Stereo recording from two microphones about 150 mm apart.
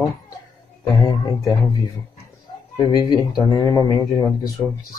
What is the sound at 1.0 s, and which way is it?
Speech, 25° left (ahead or behind).